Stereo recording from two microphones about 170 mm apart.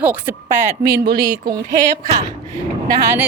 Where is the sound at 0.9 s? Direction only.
25° right (ahead or behind).